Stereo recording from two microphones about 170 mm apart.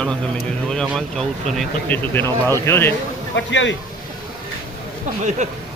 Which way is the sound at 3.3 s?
90° left.